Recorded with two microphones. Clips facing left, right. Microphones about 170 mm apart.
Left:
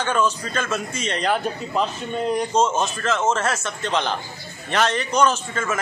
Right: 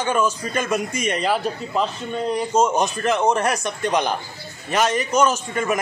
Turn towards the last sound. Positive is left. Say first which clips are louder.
# right 3 dB
turn(degrees=-15)  # may be behind; listen again after turning